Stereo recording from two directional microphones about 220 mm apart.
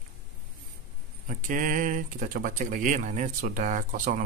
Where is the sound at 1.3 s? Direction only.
35° right (ahead or behind).